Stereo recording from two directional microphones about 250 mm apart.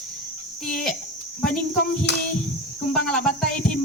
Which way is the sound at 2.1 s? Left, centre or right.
Left.